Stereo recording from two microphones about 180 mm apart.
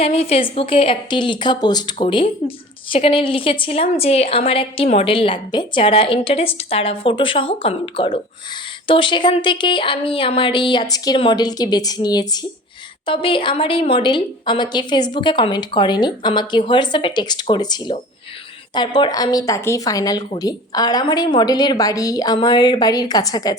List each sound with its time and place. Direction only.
0.0 s a woman's voice: 35° left (ahead or behind)